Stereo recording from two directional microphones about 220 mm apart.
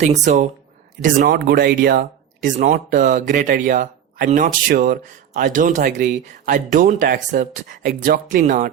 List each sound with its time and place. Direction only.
0.3 s speech: 35° right (ahead or behind)
1.0 s speech: 45° right (ahead or behind)